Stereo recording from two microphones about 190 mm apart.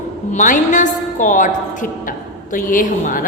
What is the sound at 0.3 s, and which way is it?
A woman's voice, 40° left (ahead or behind).